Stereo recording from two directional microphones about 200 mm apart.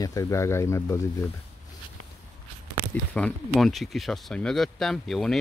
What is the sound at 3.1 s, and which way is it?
Speech, 5° left (ahead or behind).